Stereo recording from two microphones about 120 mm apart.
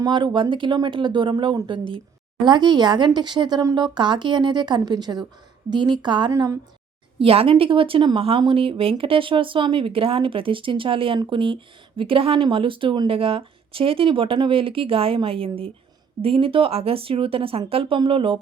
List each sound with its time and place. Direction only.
0.0 s speech: 40° right (ahead or behind)
6.3 s a woman's voice: 30° right (ahead or behind)
7.2 s speech: 50° right (ahead or behind)